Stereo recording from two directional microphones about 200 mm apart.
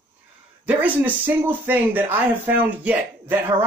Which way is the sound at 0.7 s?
5° right (ahead or behind).